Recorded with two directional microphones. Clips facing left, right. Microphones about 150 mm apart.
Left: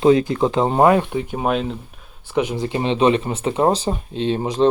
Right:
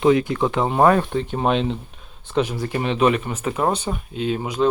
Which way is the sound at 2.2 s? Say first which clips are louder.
Left 1 dB; 15° left (ahead or behind).